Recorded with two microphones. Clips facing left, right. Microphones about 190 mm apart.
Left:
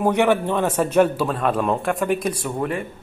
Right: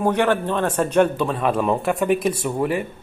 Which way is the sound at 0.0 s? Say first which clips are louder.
Left 1 dB; 10° left (ahead or behind).